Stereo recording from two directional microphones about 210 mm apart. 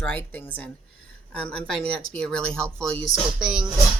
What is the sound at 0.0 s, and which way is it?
Speech, 10° left (ahead or behind).